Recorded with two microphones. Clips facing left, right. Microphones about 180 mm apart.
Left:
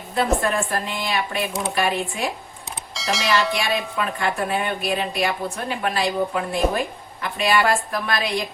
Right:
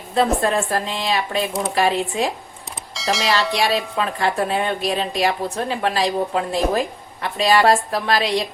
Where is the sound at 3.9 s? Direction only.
30° right (ahead or behind).